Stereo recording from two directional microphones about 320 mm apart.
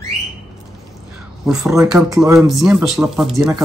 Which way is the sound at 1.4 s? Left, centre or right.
Centre.